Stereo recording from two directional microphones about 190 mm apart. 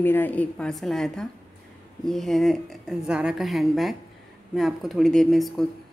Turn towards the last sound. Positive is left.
turn(degrees=0)  # may be behind; listen again after turning